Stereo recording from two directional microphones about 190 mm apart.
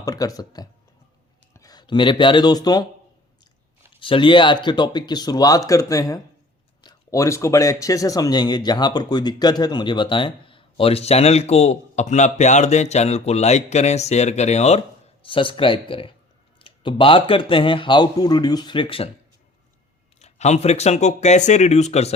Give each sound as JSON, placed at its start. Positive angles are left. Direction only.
{"t": 0.0, "sound": "speech", "side_deg": 20}
{"t": 4.0, "sound": "speech", "side_deg": 25}
{"t": 20.1, "sound": "speech", "side_deg": 35}